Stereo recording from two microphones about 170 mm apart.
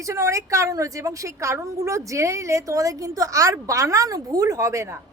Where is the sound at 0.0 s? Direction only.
20° right (ahead or behind).